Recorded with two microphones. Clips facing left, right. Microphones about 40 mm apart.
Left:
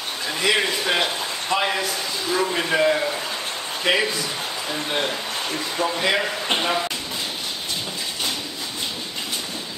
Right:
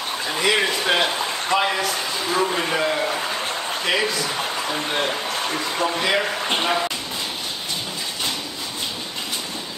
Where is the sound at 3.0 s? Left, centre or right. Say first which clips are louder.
Right 2 dB; right.